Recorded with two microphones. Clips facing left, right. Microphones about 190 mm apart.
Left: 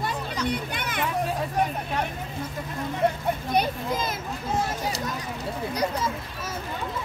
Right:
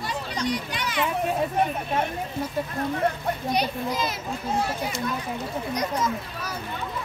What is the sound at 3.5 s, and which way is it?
Speech, 50° left (ahead or behind).